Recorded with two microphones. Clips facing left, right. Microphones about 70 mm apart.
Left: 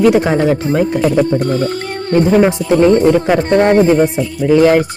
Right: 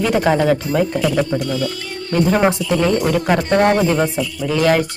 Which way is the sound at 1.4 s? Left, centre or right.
Left.